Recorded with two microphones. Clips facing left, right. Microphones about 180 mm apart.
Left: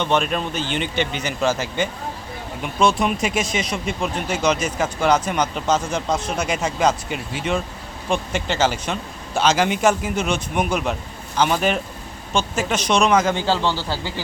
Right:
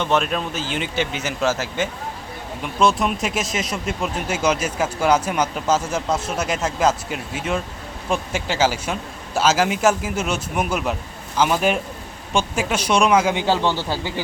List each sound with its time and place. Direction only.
0.0 s a man's voice: centre (ahead or behind); by 14.1 s 20° right (ahead or behind)